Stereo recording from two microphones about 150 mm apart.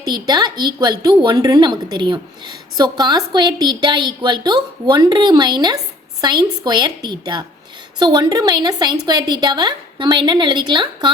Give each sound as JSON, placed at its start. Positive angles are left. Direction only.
{"t": 0.1, "sound": "a woman's voice", "side_deg": -30}